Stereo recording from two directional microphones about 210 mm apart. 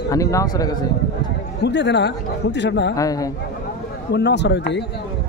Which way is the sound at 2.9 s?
15° left (ahead or behind).